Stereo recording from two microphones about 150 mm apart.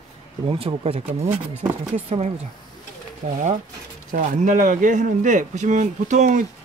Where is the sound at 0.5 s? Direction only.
35° right (ahead or behind).